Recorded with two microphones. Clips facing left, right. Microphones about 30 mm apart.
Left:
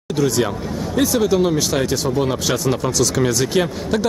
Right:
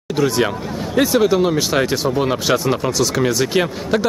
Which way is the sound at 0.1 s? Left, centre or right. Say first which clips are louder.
Right 1 dB; right.